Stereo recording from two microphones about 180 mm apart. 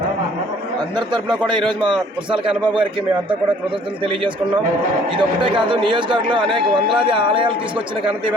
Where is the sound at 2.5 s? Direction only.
5° right (ahead or behind).